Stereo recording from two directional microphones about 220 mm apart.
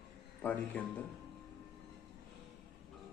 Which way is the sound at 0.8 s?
5° left (ahead or behind).